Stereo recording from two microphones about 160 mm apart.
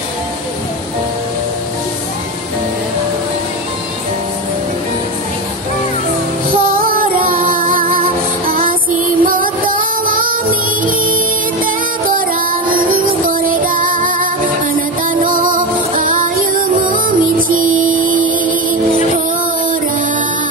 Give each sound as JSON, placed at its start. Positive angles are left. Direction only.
{"t": 6.7, "sound": "music", "side_deg": -65}
{"t": 11.6, "sound": "music", "side_deg": -60}